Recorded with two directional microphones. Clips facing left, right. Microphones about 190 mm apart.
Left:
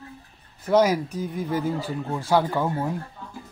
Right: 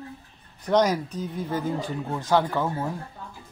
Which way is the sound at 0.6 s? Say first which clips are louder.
Left 2 dB; 5° left (ahead or behind).